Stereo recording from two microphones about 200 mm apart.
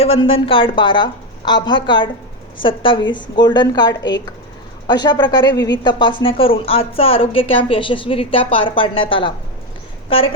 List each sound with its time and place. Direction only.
0.0 s a woman's voice: 30° left (ahead or behind)